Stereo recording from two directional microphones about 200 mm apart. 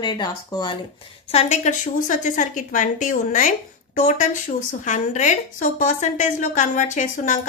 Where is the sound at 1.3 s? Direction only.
35° left (ahead or behind).